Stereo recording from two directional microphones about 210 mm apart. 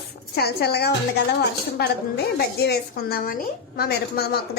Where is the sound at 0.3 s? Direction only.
50° left (ahead or behind).